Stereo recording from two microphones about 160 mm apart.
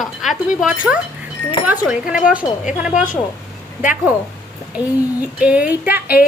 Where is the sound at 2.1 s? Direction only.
5° right (ahead or behind).